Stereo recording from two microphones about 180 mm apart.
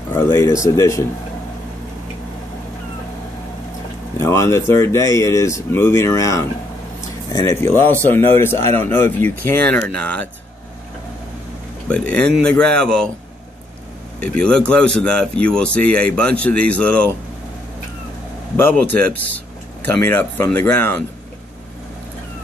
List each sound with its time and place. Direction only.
0.1 s speech: 15° left (ahead or behind)
4.2 s speech: 15° left (ahead or behind)
11.9 s speech: 5° left (ahead or behind)
14.2 s speech: 5° left (ahead or behind)
18.6 s speech: 10° left (ahead or behind)